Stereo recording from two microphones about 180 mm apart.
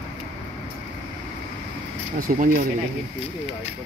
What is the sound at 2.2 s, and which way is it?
Speech, 55° right (ahead or behind).